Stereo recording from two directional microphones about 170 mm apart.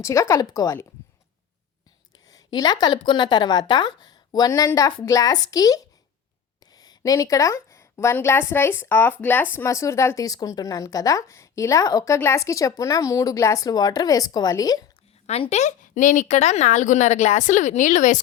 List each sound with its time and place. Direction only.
0.0 s speech: 20° left (ahead or behind)
2.2 s a woman's voice: 20° left (ahead or behind)
15.3 s a woman's voice: 40° left (ahead or behind)